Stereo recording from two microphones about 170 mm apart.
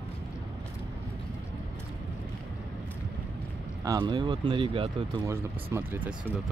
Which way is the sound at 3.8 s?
25° right (ahead or behind).